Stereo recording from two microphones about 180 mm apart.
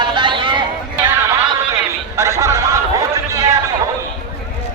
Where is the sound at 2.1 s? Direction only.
15° right (ahead or behind).